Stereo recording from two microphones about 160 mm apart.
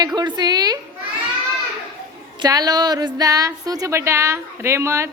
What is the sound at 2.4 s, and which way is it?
Speech, 25° right (ahead or behind).